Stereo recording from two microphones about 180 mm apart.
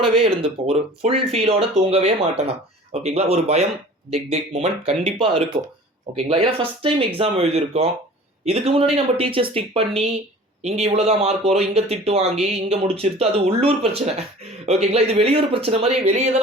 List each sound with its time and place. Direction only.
0.0 s speech: 30° right (ahead or behind)